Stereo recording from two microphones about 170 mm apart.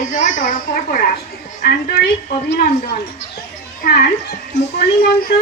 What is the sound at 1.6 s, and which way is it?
Speech, 60° left (ahead or behind).